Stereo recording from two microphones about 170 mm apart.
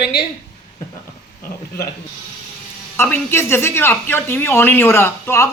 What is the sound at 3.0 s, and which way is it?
Speech, 15° left (ahead or behind).